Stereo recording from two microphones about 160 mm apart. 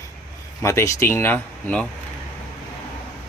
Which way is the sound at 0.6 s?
15° left (ahead or behind).